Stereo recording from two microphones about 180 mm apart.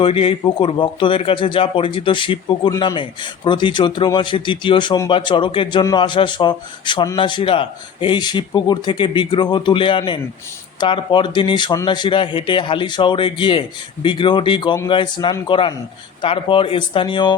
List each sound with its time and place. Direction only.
0.0 s a man's voice: 30° left (ahead or behind)